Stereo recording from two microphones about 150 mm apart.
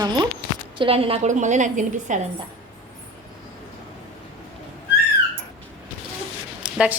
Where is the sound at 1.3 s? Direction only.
55° right (ahead or behind).